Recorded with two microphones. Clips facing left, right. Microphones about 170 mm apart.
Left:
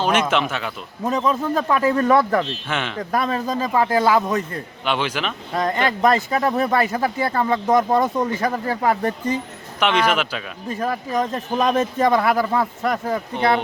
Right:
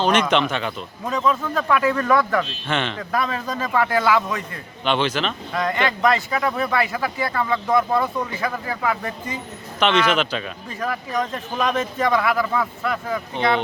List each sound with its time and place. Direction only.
0.0 s speech: 10° left (ahead or behind)
1.0 s speech: 35° left (ahead or behind)
2.6 s speech: 10° left (ahead or behind)
3.0 s speech: 40° left (ahead or behind)
4.9 s speech: 10° left (ahead or behind)
5.5 s speech: 30° left (ahead or behind)
9.8 s speech: 10° left (ahead or behind)
10.8 s speech: 30° left (ahead or behind)